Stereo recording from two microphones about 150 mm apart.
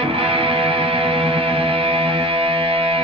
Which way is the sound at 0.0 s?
40° right (ahead or behind).